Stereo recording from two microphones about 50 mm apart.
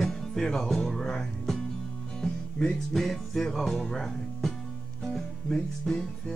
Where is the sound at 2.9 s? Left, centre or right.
Centre.